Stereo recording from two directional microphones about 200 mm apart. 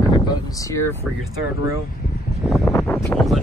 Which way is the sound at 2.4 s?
Centre (ahead or behind).